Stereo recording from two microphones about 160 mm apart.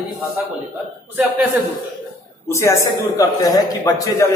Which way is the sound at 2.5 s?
15° left (ahead or behind).